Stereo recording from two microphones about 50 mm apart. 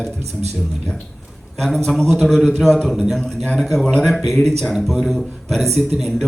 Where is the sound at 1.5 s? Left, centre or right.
Centre.